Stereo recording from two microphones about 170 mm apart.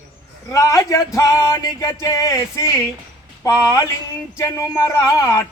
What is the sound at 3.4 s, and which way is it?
Speech, 20° left (ahead or behind).